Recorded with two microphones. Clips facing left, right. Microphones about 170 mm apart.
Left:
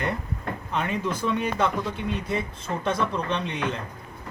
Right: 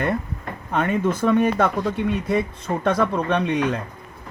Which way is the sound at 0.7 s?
50° right (ahead or behind).